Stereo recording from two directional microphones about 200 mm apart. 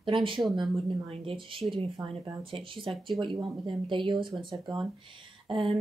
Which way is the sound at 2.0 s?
10° right (ahead or behind).